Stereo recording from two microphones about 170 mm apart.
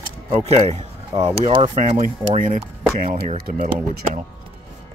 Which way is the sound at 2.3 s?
55° right (ahead or behind).